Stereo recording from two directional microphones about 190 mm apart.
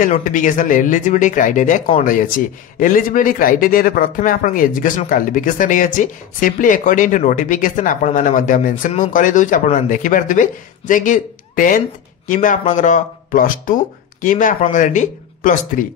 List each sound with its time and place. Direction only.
0.0 s a man's voice: 45° left (ahead or behind)